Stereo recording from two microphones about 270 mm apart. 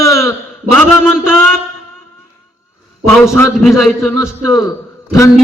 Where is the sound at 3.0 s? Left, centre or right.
Centre.